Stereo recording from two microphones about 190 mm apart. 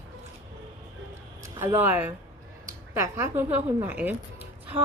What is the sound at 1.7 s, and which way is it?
A woman's voice, 10° right (ahead or behind).